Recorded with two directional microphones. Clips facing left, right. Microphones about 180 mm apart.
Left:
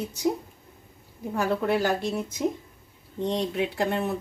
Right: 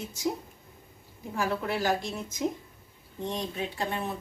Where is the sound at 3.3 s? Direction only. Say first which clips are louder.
Left 6 dB; 75° left (ahead or behind).